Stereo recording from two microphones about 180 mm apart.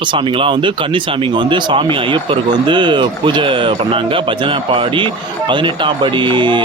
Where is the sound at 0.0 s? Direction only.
25° right (ahead or behind).